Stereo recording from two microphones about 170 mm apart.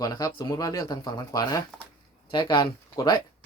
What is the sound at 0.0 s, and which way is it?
Speech, 20° left (ahead or behind).